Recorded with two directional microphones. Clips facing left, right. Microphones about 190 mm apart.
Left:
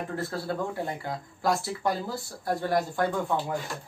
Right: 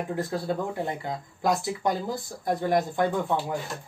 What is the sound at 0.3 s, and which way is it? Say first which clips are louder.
Speech: right 2 dB; 15° right (ahead or behind).